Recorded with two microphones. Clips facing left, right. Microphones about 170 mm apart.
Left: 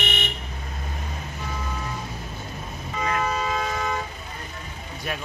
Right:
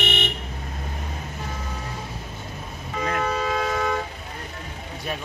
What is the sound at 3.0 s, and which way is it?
Toot, 60° right (ahead or behind).